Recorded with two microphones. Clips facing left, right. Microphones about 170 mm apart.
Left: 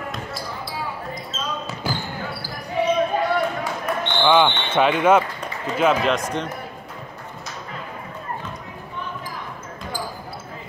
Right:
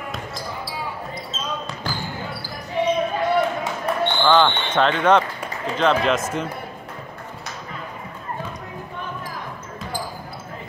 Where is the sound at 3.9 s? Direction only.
30° right (ahead or behind).